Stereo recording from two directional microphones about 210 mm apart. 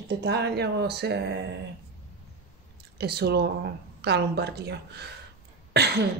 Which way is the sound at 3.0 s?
50° right (ahead or behind).